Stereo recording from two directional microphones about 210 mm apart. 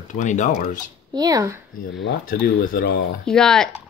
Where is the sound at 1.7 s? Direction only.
55° left (ahead or behind).